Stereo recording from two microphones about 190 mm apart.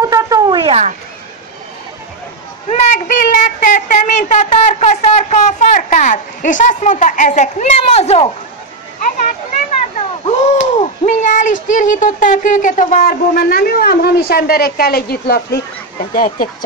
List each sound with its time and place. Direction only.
0.0 s a sound: 15° right (ahead or behind); by 0.9 s 35° right (ahead or behind)
2.7 s speech: 45° left (ahead or behind)
9.9 s a child's voice: 35° left (ahead or behind); by 15.6 s 55° left (ahead or behind)